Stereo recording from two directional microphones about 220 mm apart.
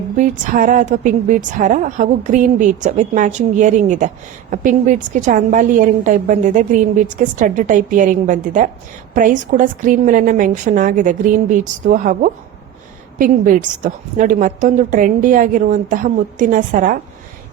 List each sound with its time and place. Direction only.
0.2 s a woman's voice: 35° right (ahead or behind)